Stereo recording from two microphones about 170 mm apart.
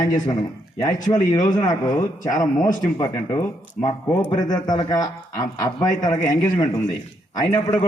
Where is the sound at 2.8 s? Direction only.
25° left (ahead or behind).